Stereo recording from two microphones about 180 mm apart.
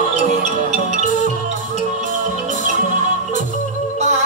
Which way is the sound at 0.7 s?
45° right (ahead or behind).